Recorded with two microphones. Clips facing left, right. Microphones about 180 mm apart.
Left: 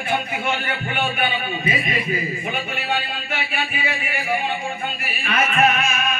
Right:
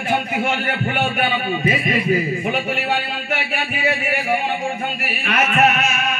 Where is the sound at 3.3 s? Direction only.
60° right (ahead or behind).